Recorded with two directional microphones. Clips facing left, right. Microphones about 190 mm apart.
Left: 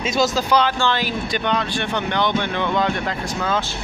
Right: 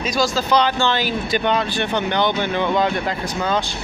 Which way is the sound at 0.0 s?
20° left (ahead or behind).